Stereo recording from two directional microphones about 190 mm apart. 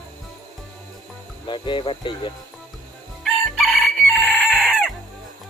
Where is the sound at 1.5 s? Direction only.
25° left (ahead or behind).